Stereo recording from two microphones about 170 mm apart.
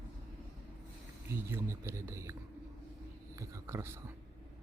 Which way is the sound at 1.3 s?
15° right (ahead or behind).